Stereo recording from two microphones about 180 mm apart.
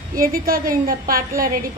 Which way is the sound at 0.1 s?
55° right (ahead or behind).